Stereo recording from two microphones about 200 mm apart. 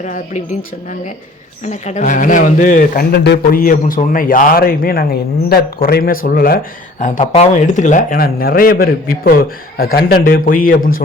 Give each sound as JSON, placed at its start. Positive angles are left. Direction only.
{"t": 0.0, "sound": "speech", "side_deg": 35}
{"t": 1.6, "sound": "speech", "side_deg": 35}